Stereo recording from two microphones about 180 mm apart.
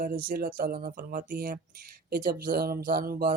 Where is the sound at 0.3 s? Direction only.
50° right (ahead or behind).